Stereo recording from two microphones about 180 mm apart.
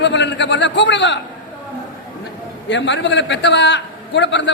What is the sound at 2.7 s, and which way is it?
A man's voice, 75° left (ahead or behind).